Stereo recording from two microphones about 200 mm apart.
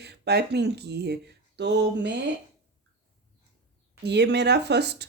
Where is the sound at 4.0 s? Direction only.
55° right (ahead or behind).